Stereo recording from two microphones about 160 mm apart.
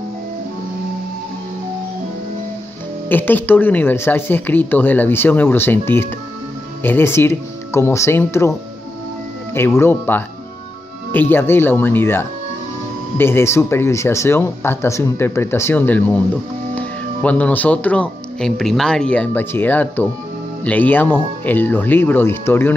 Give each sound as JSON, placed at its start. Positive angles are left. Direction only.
{"t": 3.1, "sound": "speech", "side_deg": 10}